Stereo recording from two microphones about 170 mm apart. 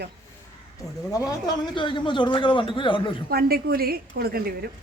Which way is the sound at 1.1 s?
20° left (ahead or behind).